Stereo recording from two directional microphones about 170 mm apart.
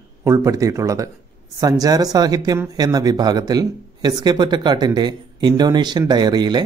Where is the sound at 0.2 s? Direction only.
20° right (ahead or behind).